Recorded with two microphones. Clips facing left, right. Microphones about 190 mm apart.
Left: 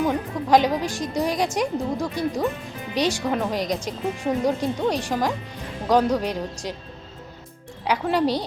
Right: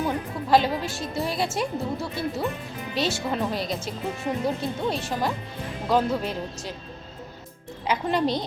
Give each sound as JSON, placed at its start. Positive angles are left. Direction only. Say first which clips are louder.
{"t": 0.5, "sound": "speech", "louder": "left 3 dB", "side_deg": 15}
{"t": 7.9, "sound": "speech", "louder": "left 2 dB", "side_deg": 10}